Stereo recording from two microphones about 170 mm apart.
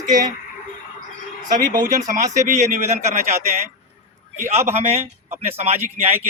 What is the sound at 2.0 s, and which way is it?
Speech, 45° right (ahead or behind).